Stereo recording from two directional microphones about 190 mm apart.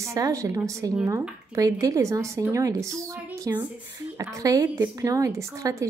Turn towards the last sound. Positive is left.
turn(degrees=-15)  # may be behind; listen again after turning